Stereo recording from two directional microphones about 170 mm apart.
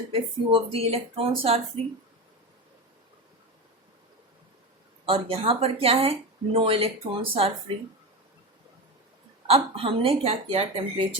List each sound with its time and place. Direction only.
0.1 s speech: 35° right (ahead or behind)
5.0 s speech: 35° right (ahead or behind)
9.5 s speech: 35° right (ahead or behind)